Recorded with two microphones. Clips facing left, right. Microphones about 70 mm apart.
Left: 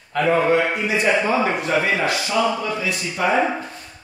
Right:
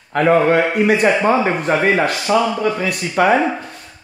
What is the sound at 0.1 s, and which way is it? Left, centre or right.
Speech, right.